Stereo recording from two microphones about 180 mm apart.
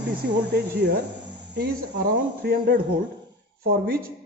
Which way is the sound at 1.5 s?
65° right (ahead or behind).